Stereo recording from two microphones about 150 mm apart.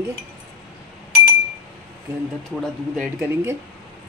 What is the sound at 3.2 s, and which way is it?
Speech, 15° right (ahead or behind).